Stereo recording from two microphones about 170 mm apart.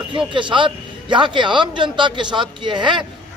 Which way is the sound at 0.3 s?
30° right (ahead or behind).